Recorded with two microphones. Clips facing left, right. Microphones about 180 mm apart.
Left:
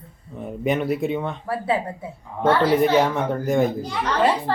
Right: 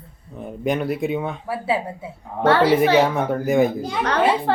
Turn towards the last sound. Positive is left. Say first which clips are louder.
# right 2 dB
turn(degrees=-65)  # may be behind; listen again after turning